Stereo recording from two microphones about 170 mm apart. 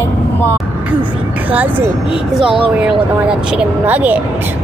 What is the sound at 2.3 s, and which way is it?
Speech, 30° right (ahead or behind).